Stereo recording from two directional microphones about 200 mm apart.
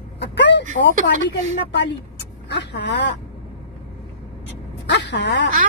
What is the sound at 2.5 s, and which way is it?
Speech, 60° left (ahead or behind).